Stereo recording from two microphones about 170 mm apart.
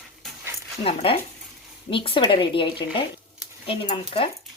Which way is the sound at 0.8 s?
35° left (ahead or behind).